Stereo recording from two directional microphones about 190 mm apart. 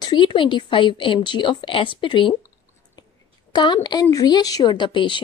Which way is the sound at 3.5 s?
25° left (ahead or behind).